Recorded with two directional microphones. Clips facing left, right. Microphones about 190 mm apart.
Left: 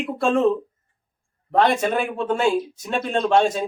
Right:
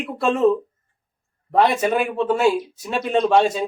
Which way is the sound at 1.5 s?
5° right (ahead or behind).